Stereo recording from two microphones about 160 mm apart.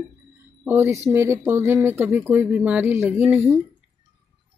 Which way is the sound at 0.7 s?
15° right (ahead or behind).